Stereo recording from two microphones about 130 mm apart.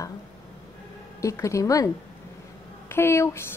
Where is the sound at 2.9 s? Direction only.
20° left (ahead or behind).